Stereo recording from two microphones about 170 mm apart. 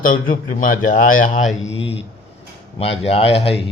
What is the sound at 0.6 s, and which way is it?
Speech, 55° left (ahead or behind).